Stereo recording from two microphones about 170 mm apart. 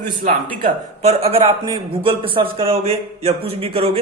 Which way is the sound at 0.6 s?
40° right (ahead or behind).